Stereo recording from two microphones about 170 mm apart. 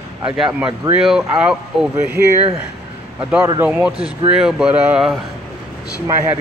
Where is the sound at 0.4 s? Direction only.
5° right (ahead or behind).